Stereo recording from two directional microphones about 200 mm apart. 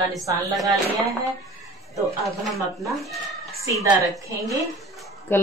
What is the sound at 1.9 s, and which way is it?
Speech, centre (ahead or behind).